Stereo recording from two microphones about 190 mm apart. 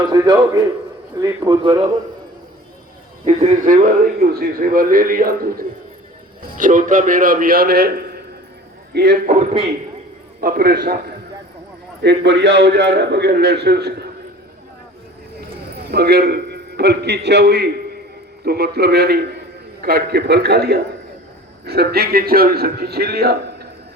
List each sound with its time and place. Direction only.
0.1 s speech: 20° right (ahead or behind)
3.2 s a man's voice: 40° right (ahead or behind); by 9.1 s 60° right (ahead or behind)
9.2 s a man's voice: 40° right (ahead or behind)
10.4 s a man's voice: 50° right (ahead or behind)
12.0 s a man's voice: 65° right (ahead or behind)
15.9 s a man's voice: 55° right (ahead or behind)